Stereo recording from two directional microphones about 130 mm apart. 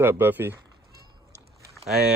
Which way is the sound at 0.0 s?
15° right (ahead or behind).